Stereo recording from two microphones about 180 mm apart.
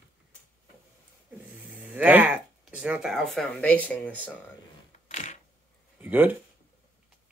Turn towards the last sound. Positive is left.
turn(degrees=-10)  # may be behind; listen again after turning